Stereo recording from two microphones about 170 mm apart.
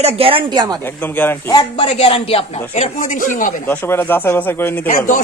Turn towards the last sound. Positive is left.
turn(degrees=50)  # may be behind; listen again after turning